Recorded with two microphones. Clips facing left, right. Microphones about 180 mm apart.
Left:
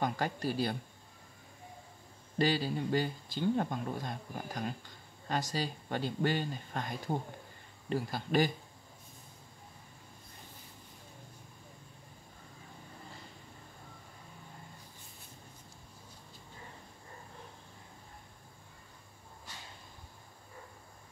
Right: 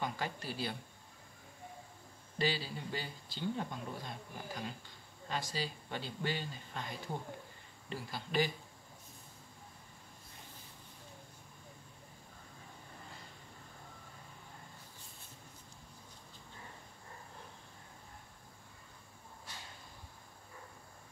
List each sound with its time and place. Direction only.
0.0 s speech: 45° left (ahead or behind)
2.3 s speech: 50° left (ahead or behind)